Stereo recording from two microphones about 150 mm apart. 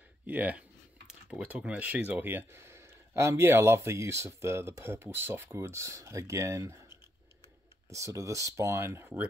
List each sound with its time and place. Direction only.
0.3 s speech: 10° right (ahead or behind)
7.9 s speech: 20° right (ahead or behind)